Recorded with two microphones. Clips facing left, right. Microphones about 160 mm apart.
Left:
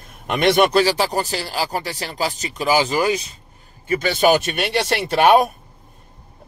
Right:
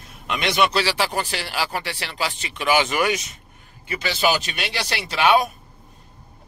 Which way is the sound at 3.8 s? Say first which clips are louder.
Left 6 dB; 45° left (ahead or behind).